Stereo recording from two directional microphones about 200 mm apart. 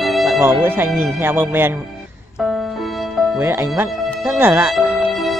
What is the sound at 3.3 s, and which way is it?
Speech, 10° right (ahead or behind).